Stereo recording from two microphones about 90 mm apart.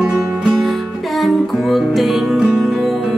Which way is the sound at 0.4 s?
Centre (ahead or behind).